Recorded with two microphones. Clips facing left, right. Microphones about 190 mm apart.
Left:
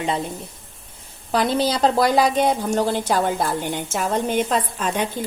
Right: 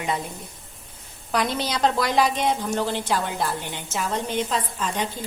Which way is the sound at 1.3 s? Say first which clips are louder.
Left 5 dB; 30° left (ahead or behind).